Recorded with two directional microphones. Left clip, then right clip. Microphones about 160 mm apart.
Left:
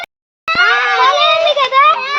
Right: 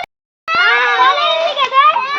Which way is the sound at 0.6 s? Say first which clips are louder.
Even; 25° left (ahead or behind).